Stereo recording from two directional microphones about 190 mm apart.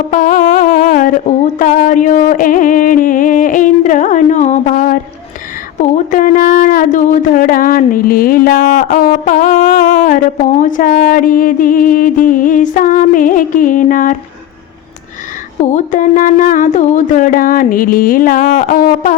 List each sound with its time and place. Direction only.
0.1 s music: 45° left (ahead or behind)
6.1 s speech: 45° left (ahead or behind)
15.6 s speech: 40° left (ahead or behind)